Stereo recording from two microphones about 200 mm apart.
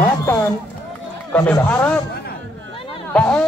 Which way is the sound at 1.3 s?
5° left (ahead or behind).